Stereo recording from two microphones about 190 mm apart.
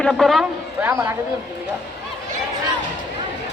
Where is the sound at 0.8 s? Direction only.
15° right (ahead or behind).